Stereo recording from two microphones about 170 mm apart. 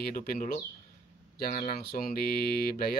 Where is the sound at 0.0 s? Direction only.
55° left (ahead or behind).